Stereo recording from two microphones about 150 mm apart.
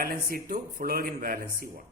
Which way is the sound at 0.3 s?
75° right (ahead or behind).